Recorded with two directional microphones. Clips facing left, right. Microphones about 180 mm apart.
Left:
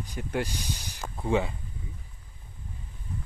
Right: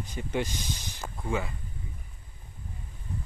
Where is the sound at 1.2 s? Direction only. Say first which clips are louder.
Left 5 dB; 25° left (ahead or behind).